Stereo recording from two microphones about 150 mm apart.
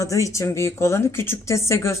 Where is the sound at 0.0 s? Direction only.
20° left (ahead or behind).